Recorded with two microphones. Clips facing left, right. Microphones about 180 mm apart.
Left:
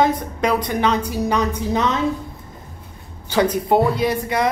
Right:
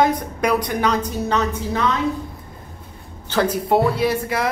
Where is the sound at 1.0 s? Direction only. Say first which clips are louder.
Left 1 dB; 10° left (ahead or behind).